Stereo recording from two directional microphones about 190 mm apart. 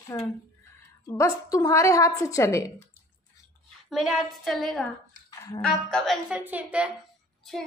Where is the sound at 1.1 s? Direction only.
15° left (ahead or behind).